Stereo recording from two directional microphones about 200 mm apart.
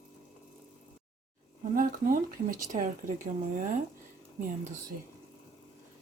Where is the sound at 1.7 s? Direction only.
45° right (ahead or behind).